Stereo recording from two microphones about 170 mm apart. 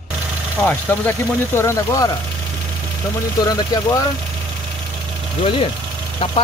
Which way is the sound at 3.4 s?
20° left (ahead or behind).